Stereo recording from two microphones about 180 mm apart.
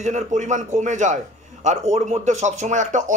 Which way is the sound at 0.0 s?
40° right (ahead or behind).